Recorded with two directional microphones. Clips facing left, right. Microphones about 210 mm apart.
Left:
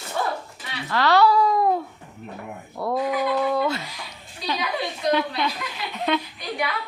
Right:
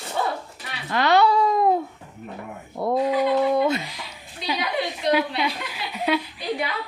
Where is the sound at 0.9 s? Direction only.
20° right (ahead or behind).